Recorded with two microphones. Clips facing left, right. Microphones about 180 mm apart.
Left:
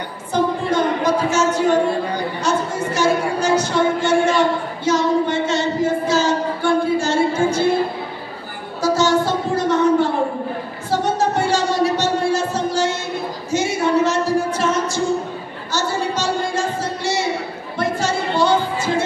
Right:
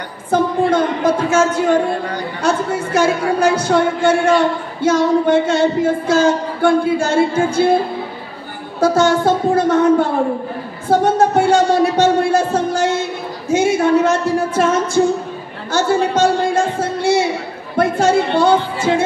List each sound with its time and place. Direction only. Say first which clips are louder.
0.3 s speech: right 4 dB; 50° right (ahead or behind)
2.4 s female singing: right 5 dB; 55° right (ahead or behind)
8.8 s female singing: right 4 dB; 55° right (ahead or behind)
10.9 s a sound: right 6 dB; 55° right (ahead or behind)
15.7 s music: right 6 dB; 55° right (ahead or behind)